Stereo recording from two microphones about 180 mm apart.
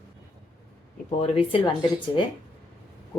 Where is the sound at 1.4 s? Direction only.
30° left (ahead or behind).